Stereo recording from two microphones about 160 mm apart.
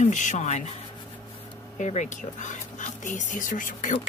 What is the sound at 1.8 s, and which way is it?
Speech, 50° left (ahead or behind).